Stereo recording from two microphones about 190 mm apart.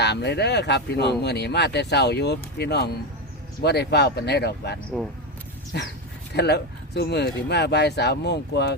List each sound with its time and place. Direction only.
0.0 s speech: 65° left (ahead or behind)